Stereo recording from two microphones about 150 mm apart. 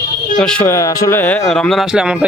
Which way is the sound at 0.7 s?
20° left (ahead or behind).